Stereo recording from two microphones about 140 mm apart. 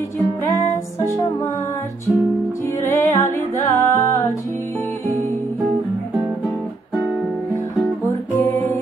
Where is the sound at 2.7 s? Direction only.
20° left (ahead or behind).